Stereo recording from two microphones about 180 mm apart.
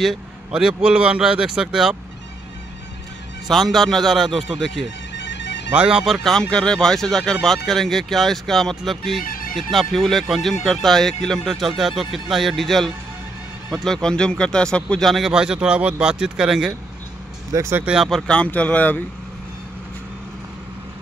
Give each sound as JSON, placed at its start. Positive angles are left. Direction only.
{"t": 0.0, "sound": "speech", "side_deg": 0}
{"t": 3.4, "sound": "speech", "side_deg": 0}
{"t": 5.1, "sound": "music", "side_deg": 80}
{"t": 5.7, "sound": "speech", "side_deg": -5}
{"t": 9.2, "sound": "music", "side_deg": 50}
{"t": 9.6, "sound": "speech", "side_deg": 0}
{"t": 17.5, "sound": "speech", "side_deg": -15}